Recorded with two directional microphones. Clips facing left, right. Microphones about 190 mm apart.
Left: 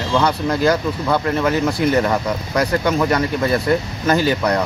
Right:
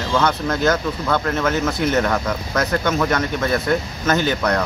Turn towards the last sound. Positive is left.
turn(degrees=10)  # may be behind; listen again after turning